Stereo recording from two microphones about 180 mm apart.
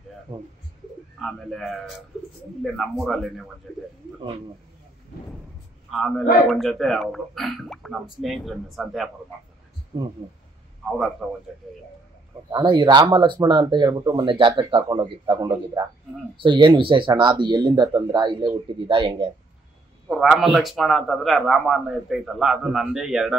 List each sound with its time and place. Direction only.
1.2 s a man's voice: centre (ahead or behind)
5.9 s a man's voice: centre (ahead or behind)
9.9 s speech: 25° right (ahead or behind)
10.9 s a man's voice: 5° right (ahead or behind)
12.4 s speech: 25° right (ahead or behind)
20.1 s a man's voice: centre (ahead or behind)